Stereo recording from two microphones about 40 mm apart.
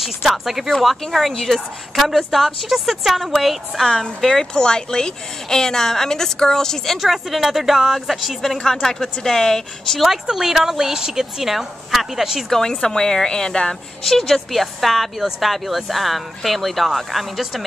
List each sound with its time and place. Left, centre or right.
0.0 s speech: centre
1.0 s a woman's voice: centre
3.8 s a woman's voice: centre
7.0 s a woman's voice: centre
10.3 s a woman's voice: centre
12.4 s a woman's voice: centre
14.0 s speech: centre